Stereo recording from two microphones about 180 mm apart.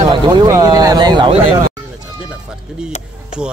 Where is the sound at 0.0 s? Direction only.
25° right (ahead or behind).